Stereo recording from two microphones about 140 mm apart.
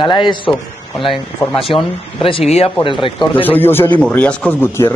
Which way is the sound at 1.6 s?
40° left (ahead or behind).